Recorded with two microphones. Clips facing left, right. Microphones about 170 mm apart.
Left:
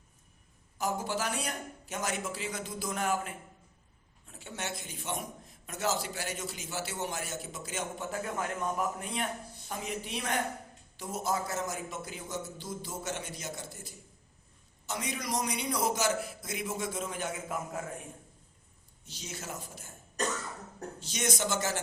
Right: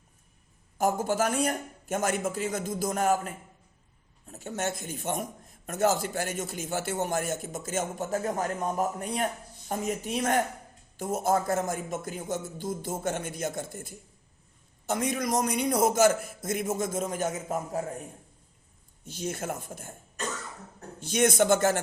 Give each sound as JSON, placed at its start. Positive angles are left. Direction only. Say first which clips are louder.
{"t": 0.8, "sound": "a man's voice", "louder": "right 7 dB", "side_deg": -50}
{"t": 19.0, "sound": "a man's voice", "louder": "right 10 dB", "side_deg": -50}
{"t": 21.0, "sound": "a man's voice", "louder": "right 10 dB", "side_deg": -55}